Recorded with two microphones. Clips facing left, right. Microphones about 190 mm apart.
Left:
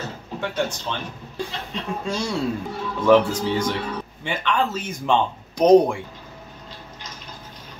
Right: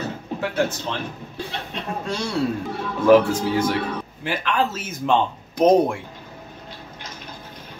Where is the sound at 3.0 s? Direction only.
5° right (ahead or behind).